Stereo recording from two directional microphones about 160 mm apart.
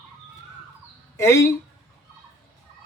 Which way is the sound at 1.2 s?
20° left (ahead or behind).